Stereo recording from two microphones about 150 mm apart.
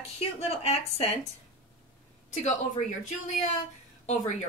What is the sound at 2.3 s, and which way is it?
A woman's voice, 50° left (ahead or behind).